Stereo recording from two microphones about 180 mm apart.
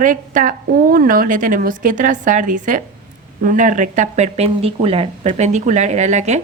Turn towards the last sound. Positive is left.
turn(degrees=-40)  # may be behind; listen again after turning